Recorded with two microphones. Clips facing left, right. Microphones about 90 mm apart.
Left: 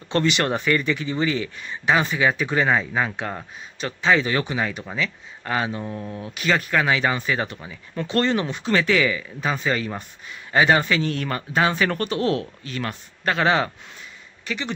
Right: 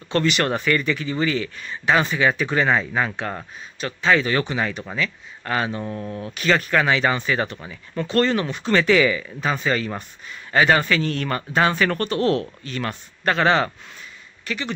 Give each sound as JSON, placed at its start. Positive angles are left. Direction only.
{"t": 0.1, "sound": "speech", "side_deg": 20}
{"t": 8.7, "sound": "speech", "side_deg": 0}
{"t": 14.4, "sound": "a sound", "side_deg": 20}